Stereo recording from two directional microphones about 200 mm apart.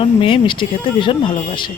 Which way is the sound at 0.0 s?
25° left (ahead or behind).